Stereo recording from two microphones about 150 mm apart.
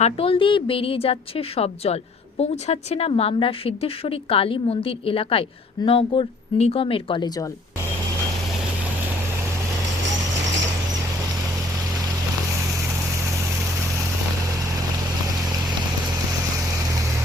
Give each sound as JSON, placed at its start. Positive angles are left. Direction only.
{"t": 0.0, "sound": "a woman's voice", "side_deg": 40}